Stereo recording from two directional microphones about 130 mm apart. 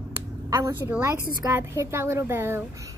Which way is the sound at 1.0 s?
20° right (ahead or behind).